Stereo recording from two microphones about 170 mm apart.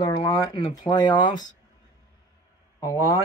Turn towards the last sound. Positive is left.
turn(degrees=20)  # may be behind; listen again after turning